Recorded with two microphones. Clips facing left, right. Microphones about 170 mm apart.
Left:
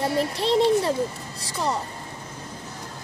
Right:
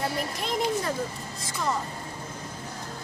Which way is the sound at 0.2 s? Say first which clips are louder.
Left 8 dB; 30° left (ahead or behind).